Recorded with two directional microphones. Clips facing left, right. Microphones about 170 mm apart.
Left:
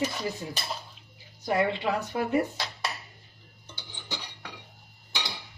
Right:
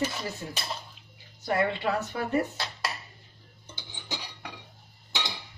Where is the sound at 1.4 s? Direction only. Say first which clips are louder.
Left 1 dB; 15° left (ahead or behind).